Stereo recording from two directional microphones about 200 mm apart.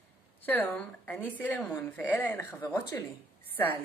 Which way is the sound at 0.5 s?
10° left (ahead or behind).